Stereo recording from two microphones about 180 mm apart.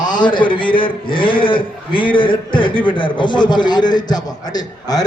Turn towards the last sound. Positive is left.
turn(degrees=20)  # may be behind; listen again after turning